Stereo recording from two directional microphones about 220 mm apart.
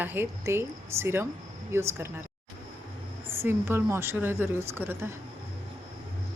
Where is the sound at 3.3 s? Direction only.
10° right (ahead or behind).